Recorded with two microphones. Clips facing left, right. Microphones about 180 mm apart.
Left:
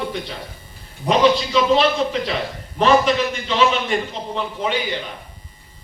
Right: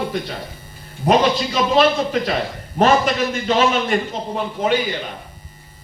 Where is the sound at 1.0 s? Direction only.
45° right (ahead or behind).